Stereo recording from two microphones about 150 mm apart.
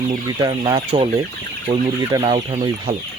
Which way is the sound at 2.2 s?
45° right (ahead or behind).